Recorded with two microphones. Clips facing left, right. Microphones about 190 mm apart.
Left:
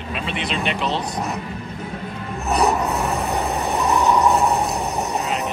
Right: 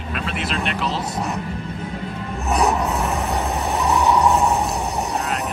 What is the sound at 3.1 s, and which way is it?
Vehicle, 15° left (ahead or behind).